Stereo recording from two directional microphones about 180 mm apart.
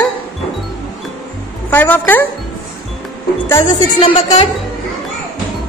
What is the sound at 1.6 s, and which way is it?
Speech, 10° left (ahead or behind).